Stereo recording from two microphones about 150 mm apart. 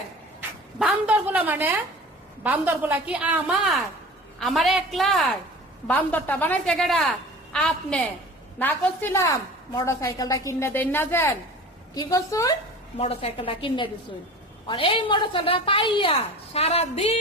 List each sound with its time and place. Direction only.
0.8 s a woman's voice: 10° right (ahead or behind); by 12.5 s 20° left (ahead or behind)
13.0 s a woman's voice: 40° left (ahead or behind)